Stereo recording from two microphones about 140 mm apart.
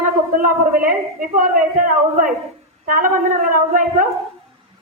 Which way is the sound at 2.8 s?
75° right (ahead or behind).